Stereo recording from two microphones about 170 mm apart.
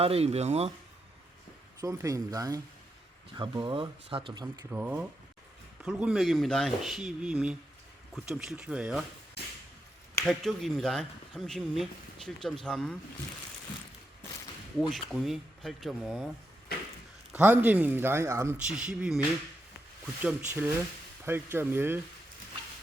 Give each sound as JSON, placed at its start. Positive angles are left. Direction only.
{"t": 0.0, "sound": "speech", "side_deg": -35}
{"t": 1.8, "sound": "speech", "side_deg": -20}
{"t": 4.7, "sound": "speech", "side_deg": -10}
{"t": 9.4, "sound": "a sound", "side_deg": 75}
{"t": 10.2, "sound": "speech", "side_deg": 0}
{"t": 14.8, "sound": "speech", "side_deg": 0}
{"t": 17.3, "sound": "speech", "side_deg": -10}
{"t": 20.2, "sound": "speech", "side_deg": -10}